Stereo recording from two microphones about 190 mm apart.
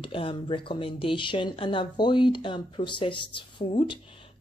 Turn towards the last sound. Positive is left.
turn(degrees=30)  # may be behind; listen again after turning